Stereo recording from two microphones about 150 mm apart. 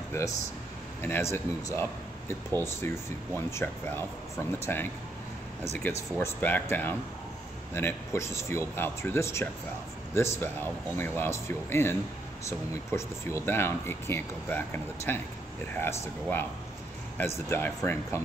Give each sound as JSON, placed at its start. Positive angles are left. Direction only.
{"t": 0.1, "sound": "speech", "side_deg": 20}
{"t": 17.5, "sound": "speech", "side_deg": 15}